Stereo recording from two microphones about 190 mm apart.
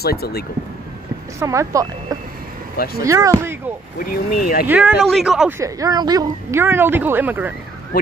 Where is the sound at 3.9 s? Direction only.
50° left (ahead or behind).